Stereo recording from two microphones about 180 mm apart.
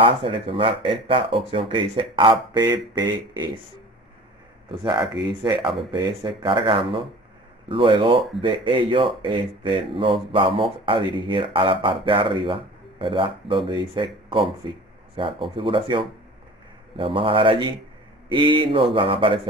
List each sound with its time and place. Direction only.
0.0 s speech: 30° right (ahead or behind)
4.6 s speech: 25° right (ahead or behind)